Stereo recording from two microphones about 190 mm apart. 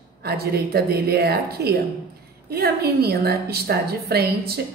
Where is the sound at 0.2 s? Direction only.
55° right (ahead or behind).